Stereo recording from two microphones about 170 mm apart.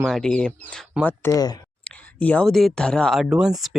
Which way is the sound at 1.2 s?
20° left (ahead or behind).